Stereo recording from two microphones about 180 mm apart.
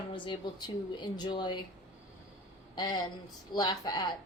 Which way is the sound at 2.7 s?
25° left (ahead or behind).